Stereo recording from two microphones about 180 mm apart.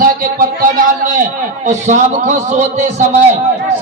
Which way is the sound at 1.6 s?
40° right (ahead or behind).